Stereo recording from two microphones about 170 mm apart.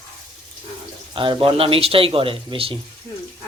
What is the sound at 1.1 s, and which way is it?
Speech, 30° right (ahead or behind).